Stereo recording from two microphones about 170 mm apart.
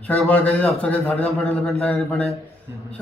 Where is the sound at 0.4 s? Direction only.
5° left (ahead or behind).